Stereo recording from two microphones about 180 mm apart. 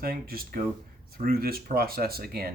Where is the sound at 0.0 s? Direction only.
55° right (ahead or behind).